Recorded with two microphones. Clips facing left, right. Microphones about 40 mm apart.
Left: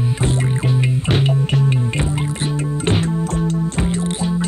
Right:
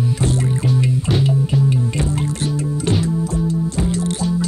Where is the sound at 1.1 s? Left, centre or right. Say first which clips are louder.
Left 1 dB; left.